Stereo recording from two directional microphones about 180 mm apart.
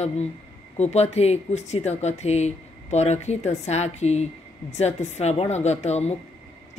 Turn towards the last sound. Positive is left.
turn(degrees=40)  # may be behind; listen again after turning